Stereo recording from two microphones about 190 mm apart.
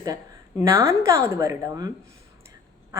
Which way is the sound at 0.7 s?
15° right (ahead or behind).